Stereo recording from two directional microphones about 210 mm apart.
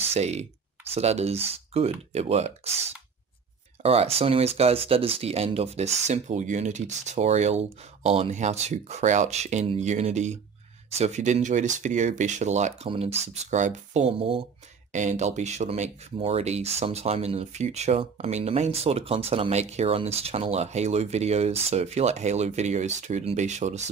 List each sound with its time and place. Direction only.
0.0 s speech: 30° right (ahead or behind)
3.8 s speech: 30° right (ahead or behind)